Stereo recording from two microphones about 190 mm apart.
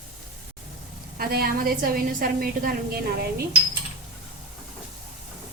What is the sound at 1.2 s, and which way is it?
A woman's voice, 50° right (ahead or behind).